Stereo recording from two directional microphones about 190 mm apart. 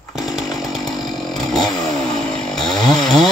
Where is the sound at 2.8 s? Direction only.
20° left (ahead or behind).